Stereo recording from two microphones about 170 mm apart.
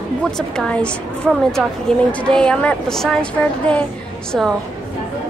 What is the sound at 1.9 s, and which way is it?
Speech, 5° left (ahead or behind).